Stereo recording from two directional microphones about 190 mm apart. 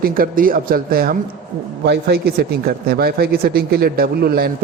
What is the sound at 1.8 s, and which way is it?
Speech, 60° right (ahead or behind).